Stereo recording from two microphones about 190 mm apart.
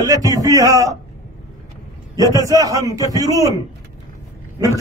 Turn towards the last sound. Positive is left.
turn(degrees=-15)  # may be behind; listen again after turning